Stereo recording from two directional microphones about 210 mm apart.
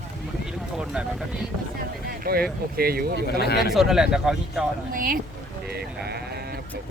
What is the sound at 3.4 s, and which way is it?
Speech, 50° left (ahead or behind).